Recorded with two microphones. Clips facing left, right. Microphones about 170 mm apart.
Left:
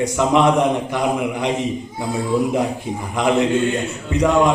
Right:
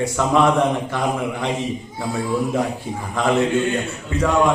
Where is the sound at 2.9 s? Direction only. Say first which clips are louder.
Left 2 dB; 20° left (ahead or behind).